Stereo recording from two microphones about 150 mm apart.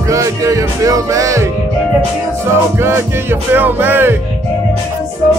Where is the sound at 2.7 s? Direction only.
15° right (ahead or behind).